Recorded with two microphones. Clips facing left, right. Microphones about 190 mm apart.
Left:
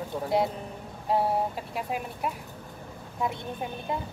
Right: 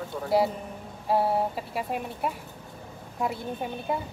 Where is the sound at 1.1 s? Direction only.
Centre (ahead or behind).